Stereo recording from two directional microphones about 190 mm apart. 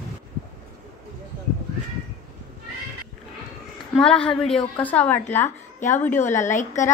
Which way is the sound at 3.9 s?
5° left (ahead or behind).